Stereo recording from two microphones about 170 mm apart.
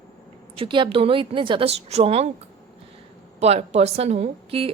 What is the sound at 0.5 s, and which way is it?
A woman's voice, 30° right (ahead or behind).